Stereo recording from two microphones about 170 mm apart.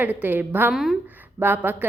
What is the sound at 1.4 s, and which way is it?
Speech, 10° right (ahead or behind).